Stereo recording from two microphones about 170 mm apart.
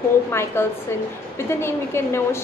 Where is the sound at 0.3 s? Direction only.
15° left (ahead or behind).